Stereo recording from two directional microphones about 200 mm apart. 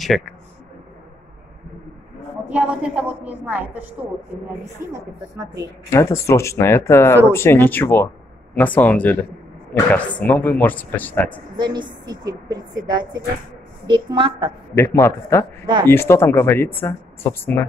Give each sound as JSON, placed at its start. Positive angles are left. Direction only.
{"t": 0.0, "sound": "a man's voice", "side_deg": 0}
{"t": 2.4, "sound": "a woman's voice", "side_deg": -5}
{"t": 5.9, "sound": "speech", "side_deg": 15}
{"t": 11.5, "sound": "a woman's voice", "side_deg": -20}
{"t": 14.8, "sound": "speech", "side_deg": 15}
{"t": 15.6, "sound": "a woman's voice", "side_deg": -20}
{"t": 15.9, "sound": "speech", "side_deg": 10}